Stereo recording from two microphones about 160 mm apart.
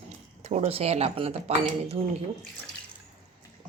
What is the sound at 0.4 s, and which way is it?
Speech, 40° right (ahead or behind).